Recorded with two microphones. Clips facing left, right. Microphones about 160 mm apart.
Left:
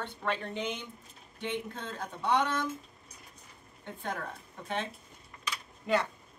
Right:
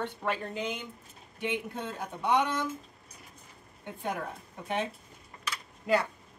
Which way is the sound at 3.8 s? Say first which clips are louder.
Right 3 dB; 10° right (ahead or behind).